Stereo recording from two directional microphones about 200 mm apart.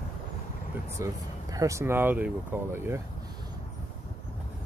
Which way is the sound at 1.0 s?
15° right (ahead or behind).